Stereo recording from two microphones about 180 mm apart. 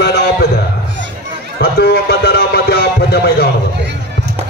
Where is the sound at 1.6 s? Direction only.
60° left (ahead or behind).